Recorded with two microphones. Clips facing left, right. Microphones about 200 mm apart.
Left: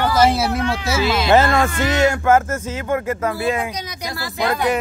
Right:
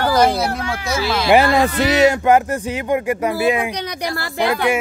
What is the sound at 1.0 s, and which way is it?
Speech, 20° left (ahead or behind).